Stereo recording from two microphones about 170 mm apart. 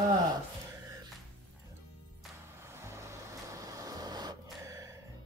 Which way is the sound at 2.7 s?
15° right (ahead or behind).